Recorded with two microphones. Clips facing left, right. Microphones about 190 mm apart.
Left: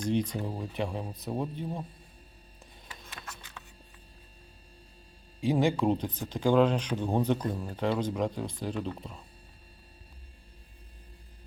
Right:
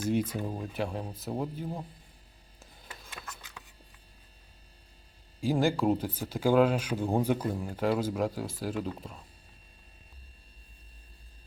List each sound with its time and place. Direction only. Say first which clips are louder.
0.0 s speech: even; 5° right (ahead or behind)
2.8 s a sound: even; 5° right (ahead or behind)
5.4 s speech: left 1 dB; centre (ahead or behind)